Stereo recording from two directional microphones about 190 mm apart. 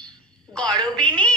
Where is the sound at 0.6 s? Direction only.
20° right (ahead or behind).